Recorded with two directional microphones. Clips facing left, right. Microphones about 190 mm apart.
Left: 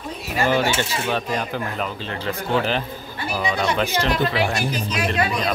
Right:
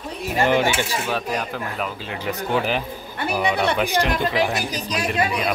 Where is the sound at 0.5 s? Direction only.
15° right (ahead or behind).